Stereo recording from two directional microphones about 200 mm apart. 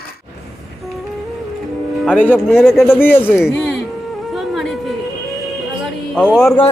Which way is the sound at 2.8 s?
10° left (ahead or behind).